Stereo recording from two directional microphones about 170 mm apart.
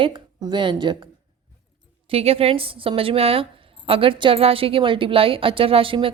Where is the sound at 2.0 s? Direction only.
35° right (ahead or behind).